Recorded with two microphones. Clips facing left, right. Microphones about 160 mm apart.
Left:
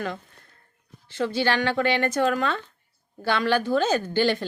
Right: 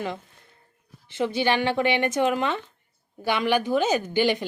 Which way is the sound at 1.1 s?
20° right (ahead or behind).